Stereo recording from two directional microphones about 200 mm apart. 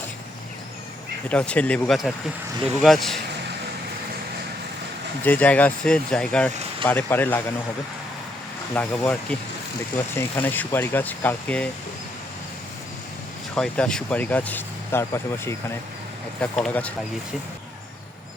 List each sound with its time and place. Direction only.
1.3 s speech: 5° left (ahead or behind)
5.2 s speech: 10° left (ahead or behind)
6.5 s speech: 30° right (ahead or behind)
6.8 s speech: 10° left (ahead or behind)
8.7 s speech: 10° left (ahead or behind)
10.2 s speech: 10° left (ahead or behind)
13.6 s speech: 5° left (ahead or behind)